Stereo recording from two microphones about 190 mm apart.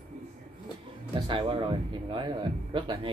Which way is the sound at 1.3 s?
25° right (ahead or behind).